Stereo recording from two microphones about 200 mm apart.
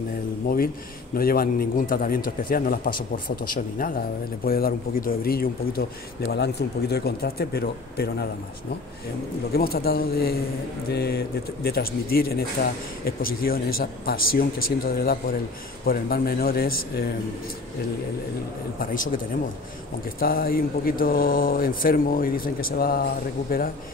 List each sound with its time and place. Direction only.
1.1 s speech: 45° left (ahead or behind)
9.5 s speech: 50° left (ahead or behind)
20.2 s speech: 45° left (ahead or behind)